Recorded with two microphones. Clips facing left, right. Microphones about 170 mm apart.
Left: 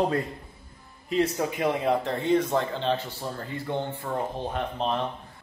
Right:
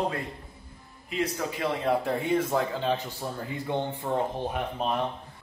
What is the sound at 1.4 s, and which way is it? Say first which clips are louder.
Speech: left 3 dB; 20° left (ahead or behind).